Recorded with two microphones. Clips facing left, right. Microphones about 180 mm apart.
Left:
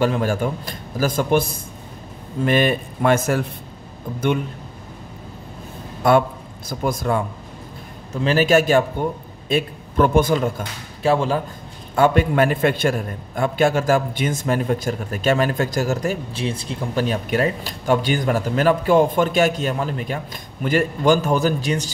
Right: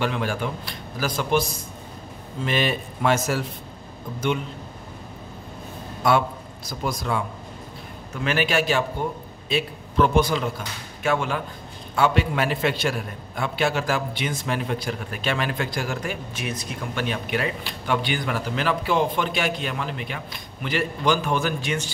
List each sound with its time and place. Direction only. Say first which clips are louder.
0.0 s a man's voice: left 6 dB; 40° left (ahead or behind)
6.7 s a man's voice: left 5 dB; 50° left (ahead or behind)
8.1 s a man's voice: left 7 dB; 35° left (ahead or behind)
11.0 s a man's voice: left 6 dB; 35° left (ahead or behind)
11.9 s a man's voice: left 5 dB; 50° left (ahead or behind)